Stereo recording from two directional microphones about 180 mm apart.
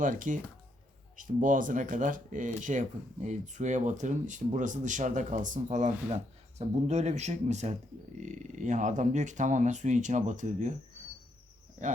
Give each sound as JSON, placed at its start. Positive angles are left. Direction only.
{"t": 0.0, "sound": "speech", "side_deg": -45}